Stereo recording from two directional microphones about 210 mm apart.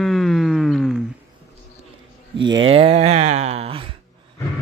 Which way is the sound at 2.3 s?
20° right (ahead or behind).